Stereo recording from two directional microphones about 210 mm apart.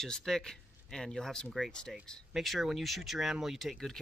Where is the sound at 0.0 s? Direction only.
Centre (ahead or behind).